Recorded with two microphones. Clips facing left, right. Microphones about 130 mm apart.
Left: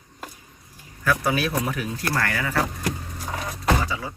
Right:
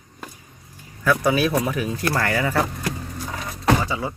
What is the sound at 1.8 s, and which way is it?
Speech, 25° right (ahead or behind).